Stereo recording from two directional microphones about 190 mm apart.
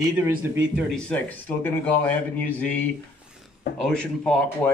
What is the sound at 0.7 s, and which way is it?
A man's voice, 5° left (ahead or behind).